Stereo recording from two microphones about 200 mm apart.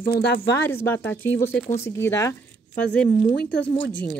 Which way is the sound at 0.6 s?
10° left (ahead or behind).